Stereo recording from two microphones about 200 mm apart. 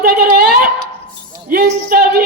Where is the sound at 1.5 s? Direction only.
50° right (ahead or behind).